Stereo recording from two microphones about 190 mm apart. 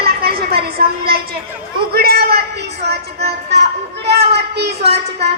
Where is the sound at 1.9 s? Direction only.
55° right (ahead or behind).